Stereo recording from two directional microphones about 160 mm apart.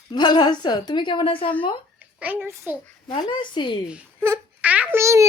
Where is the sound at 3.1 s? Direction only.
30° left (ahead or behind).